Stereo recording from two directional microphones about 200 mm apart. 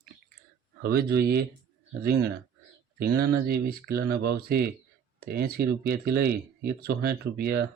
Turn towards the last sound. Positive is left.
turn(degrees=-50)  # may be behind; listen again after turning